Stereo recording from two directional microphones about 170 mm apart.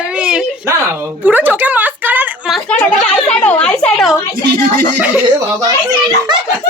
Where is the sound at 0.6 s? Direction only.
15° right (ahead or behind).